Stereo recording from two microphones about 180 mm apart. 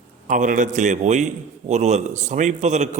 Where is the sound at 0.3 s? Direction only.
45° right (ahead or behind).